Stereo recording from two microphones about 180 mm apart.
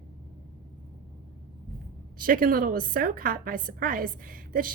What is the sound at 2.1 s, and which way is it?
A woman's voice, 50° right (ahead or behind).